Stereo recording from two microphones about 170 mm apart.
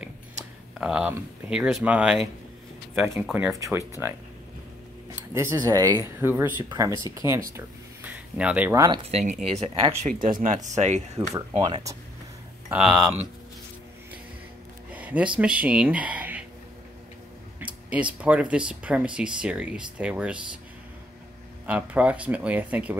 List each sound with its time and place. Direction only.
0.7 s speech: 5° right (ahead or behind)
3.5 s speech: 20° right (ahead or behind)
5.3 s speech: 15° right (ahead or behind)
9.0 s speech: 40° right (ahead or behind)
10.2 s speech: 50° right (ahead or behind)
11.2 s speech: 25° right (ahead or behind)
12.6 s speech: 5° right (ahead or behind)
14.9 s a sound: 10° right (ahead or behind)
15.3 s speech: 5° right (ahead or behind)
17.6 s speech: 5° right (ahead or behind)
21.6 s speech: 10° right (ahead or behind)